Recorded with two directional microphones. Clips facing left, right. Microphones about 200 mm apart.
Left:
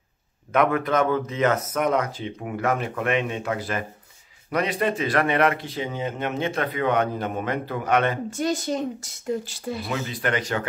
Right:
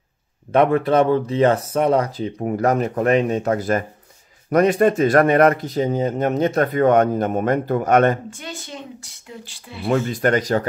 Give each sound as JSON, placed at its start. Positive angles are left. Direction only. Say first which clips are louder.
{"t": 0.5, "sound": "speech", "louder": "right 5 dB", "side_deg": -30}
{"t": 8.3, "sound": "speech", "louder": "left 9 dB", "side_deg": 40}
{"t": 9.8, "sound": "speech", "louder": "right 11 dB", "side_deg": -45}